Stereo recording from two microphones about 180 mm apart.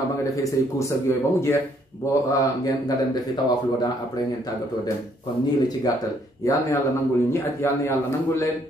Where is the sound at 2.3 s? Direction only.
20° left (ahead or behind).